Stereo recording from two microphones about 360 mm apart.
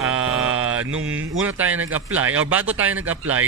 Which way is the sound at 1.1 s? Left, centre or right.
Centre.